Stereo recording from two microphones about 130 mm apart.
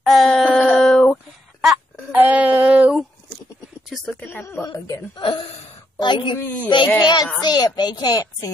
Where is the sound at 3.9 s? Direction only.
10° left (ahead or behind).